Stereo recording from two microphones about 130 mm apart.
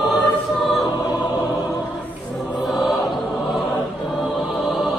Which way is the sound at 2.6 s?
Centre (ahead or behind).